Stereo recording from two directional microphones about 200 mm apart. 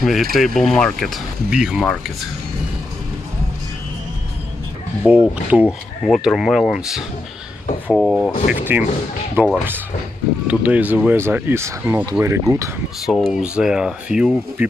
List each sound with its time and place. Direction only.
0.0 s speech: centre (ahead or behind)
5.0 s speech: 5° right (ahead or behind)
8.4 s speech: 40° left (ahead or behind)
9.3 s speech: 5° right (ahead or behind)
13.0 s speech: centre (ahead or behind)